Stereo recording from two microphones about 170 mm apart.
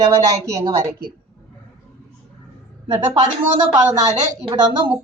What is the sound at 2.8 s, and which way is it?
A woman's voice, 25° right (ahead or behind).